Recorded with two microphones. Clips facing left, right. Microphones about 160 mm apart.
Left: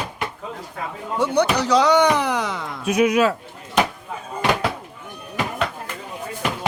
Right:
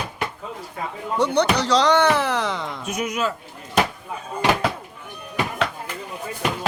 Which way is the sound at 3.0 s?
70° left (ahead or behind).